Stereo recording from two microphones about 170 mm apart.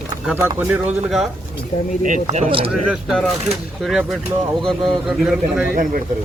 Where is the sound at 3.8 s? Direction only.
Centre (ahead or behind).